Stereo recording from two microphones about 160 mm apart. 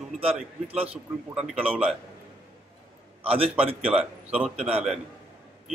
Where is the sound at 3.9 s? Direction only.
5° right (ahead or behind).